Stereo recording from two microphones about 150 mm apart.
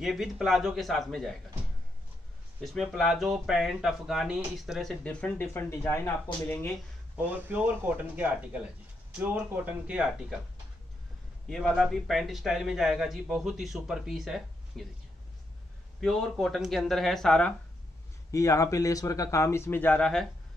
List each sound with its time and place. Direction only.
0.0 s speech: centre (ahead or behind)
2.6 s speech: centre (ahead or behind)
7.2 s speech: 10° right (ahead or behind)
11.4 s speech: centre (ahead or behind)
16.0 s speech: 5° left (ahead or behind)
18.3 s speech: 20° left (ahead or behind); by 20.2 s 5° left (ahead or behind)